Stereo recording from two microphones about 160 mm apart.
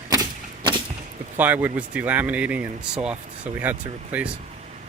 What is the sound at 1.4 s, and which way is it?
Speech, 10° right (ahead or behind).